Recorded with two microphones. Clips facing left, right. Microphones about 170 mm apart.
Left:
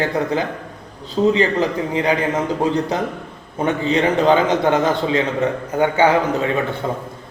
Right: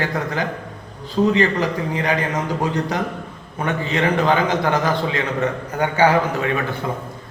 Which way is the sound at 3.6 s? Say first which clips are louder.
Left 3 dB; 25° left (ahead or behind).